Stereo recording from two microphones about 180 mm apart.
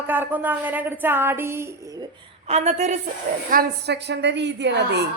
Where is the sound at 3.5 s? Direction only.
60° right (ahead or behind).